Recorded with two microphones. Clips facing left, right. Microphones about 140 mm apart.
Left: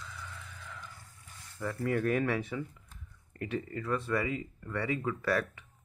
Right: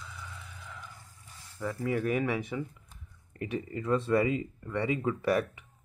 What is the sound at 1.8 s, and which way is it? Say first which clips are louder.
Speech: even; 10° right (ahead or behind).